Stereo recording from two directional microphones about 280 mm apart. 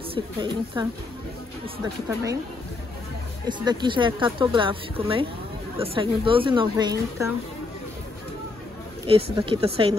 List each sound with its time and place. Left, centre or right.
0.1 s speech: centre
3.4 s speech: centre
9.0 s speech: centre